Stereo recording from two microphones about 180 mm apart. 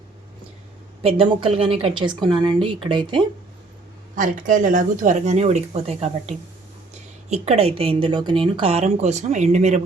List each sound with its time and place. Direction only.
1.2 s speech: 30° right (ahead or behind)
4.1 s speech: 45° right (ahead or behind)